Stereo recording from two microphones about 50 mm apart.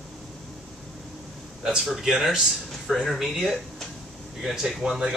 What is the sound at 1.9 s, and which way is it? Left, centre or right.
Speech, centre.